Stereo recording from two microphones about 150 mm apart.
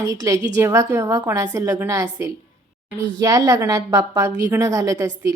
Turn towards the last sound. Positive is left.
turn(degrees=-20)  # may be behind; listen again after turning